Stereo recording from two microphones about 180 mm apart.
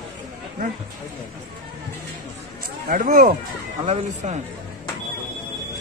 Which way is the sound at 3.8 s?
35° right (ahead or behind).